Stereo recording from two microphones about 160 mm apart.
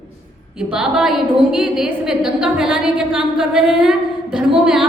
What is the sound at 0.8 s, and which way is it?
A woman's voice, 5° right (ahead or behind).